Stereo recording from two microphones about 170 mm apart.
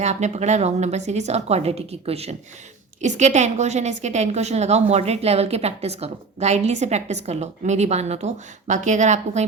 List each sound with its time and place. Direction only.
0.0 s a woman's voice: 40° right (ahead or behind)